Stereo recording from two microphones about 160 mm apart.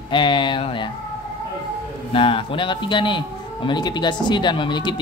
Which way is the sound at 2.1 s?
35° left (ahead or behind).